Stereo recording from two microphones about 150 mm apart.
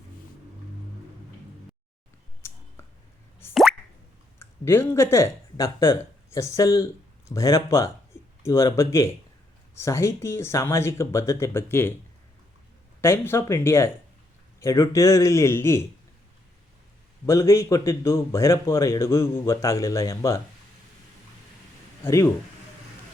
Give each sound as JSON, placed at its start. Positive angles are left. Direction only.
{"t": 2.4, "sound": "a sound", "side_deg": 20}
{"t": 3.5, "sound": "plop", "side_deg": 0}
{"t": 4.4, "sound": "speech", "side_deg": 15}
{"t": 13.0, "sound": "a man's voice", "side_deg": 15}
{"t": 17.2, "sound": "a man's voice", "side_deg": 20}
{"t": 22.0, "sound": "speech", "side_deg": 20}